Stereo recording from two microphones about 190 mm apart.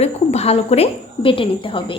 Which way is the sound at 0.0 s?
35° left (ahead or behind).